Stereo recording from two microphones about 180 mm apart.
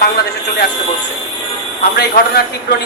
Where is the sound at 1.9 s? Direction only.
65° left (ahead or behind).